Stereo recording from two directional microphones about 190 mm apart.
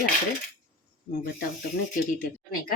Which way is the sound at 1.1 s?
55° left (ahead or behind).